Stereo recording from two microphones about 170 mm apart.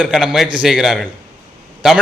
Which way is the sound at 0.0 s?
Centre (ahead or behind).